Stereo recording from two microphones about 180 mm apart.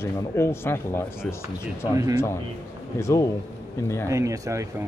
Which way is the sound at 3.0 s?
15° left (ahead or behind).